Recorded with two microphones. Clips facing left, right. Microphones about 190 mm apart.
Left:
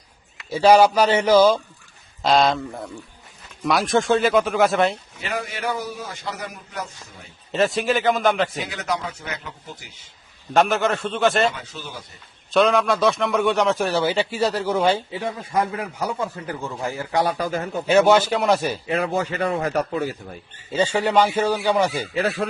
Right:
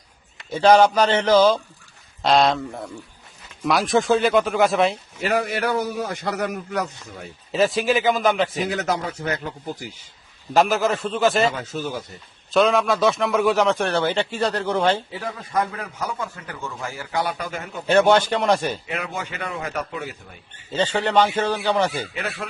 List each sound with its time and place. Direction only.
0.5 s a man's voice: 10° left (ahead or behind)
5.2 s a man's voice: 55° right (ahead or behind)
7.5 s a man's voice: centre (ahead or behind)
8.7 s speech: 40° right (ahead or behind)
10.5 s a man's voice: centre (ahead or behind)
11.7 s speech: 45° right (ahead or behind)
12.5 s a man's voice: centre (ahead or behind)
15.1 s speech: 25° left (ahead or behind)
17.8 s a man's voice: 5° left (ahead or behind)
18.9 s speech: 35° left (ahead or behind)
20.7 s a man's voice: 10° left (ahead or behind)
22.1 s speech: 35° left (ahead or behind)